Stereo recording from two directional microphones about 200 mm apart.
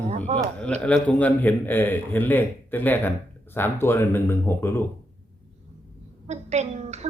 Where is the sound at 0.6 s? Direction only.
5° left (ahead or behind).